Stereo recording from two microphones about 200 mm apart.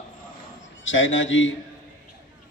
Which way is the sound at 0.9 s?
70° left (ahead or behind).